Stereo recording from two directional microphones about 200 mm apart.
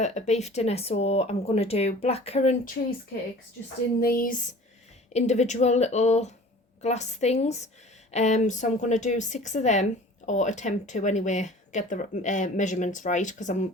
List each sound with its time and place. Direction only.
0.0 s speech: 35° left (ahead or behind)
4.0 s a sound: 45° left (ahead or behind)
5.1 s speech: 35° left (ahead or behind)